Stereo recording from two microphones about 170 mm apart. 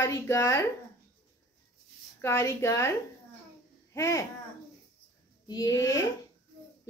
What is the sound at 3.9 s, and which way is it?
Speech, 20° left (ahead or behind).